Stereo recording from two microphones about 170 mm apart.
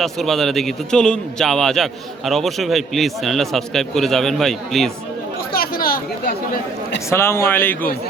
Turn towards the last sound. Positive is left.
turn(degrees=10)  # may be behind; listen again after turning